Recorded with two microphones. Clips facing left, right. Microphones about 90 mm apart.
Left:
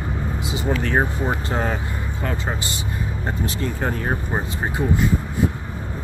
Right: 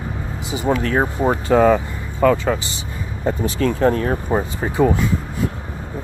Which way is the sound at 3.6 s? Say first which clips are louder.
Right 10 dB; 70° right (ahead or behind).